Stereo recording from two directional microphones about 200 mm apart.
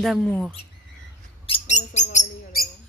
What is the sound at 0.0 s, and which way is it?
Speech, centre (ahead or behind).